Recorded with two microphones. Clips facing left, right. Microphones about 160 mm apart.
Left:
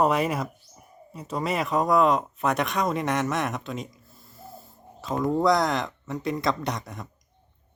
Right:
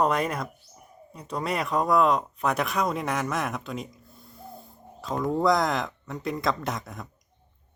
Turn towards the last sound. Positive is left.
turn(degrees=0)  # may be behind; listen again after turning